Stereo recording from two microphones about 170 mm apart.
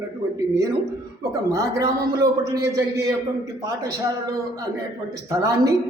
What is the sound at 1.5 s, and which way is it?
A man's voice, 20° right (ahead or behind).